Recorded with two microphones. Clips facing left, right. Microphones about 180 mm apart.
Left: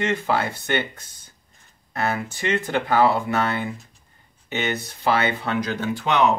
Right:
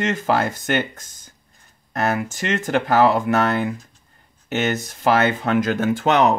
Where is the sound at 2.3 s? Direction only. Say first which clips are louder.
Right 2 dB; 45° right (ahead or behind).